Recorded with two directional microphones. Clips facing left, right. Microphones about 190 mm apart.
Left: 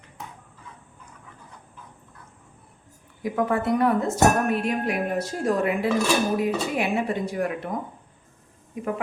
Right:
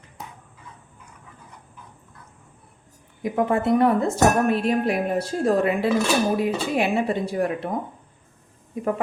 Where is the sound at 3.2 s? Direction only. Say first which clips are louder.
Right 2 dB; 20° right (ahead or behind).